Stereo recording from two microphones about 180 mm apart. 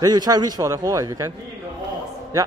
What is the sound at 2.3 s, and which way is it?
Speech, 20° right (ahead or behind).